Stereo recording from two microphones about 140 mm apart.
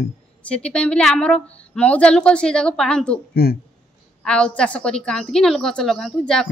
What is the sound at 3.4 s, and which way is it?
Speech, 90° left.